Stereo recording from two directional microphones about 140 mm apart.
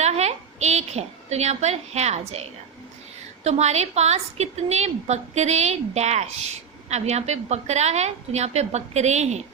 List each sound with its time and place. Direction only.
0.0 s a woman's voice: 50° right (ahead or behind)